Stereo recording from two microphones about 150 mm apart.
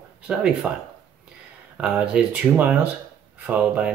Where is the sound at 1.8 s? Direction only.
10° right (ahead or behind).